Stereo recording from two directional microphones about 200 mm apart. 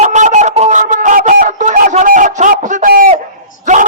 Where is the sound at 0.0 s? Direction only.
35° right (ahead or behind).